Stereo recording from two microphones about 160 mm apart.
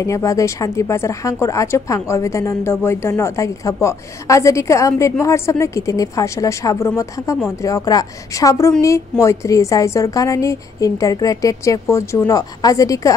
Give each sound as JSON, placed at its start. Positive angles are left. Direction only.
{"t": 0.0, "sound": "a woman's voice", "side_deg": 20}